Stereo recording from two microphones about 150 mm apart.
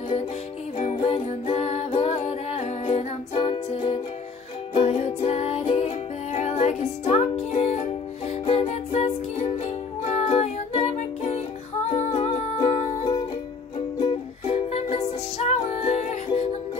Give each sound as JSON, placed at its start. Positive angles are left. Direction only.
{"t": 0.7, "sound": "music", "side_deg": 45}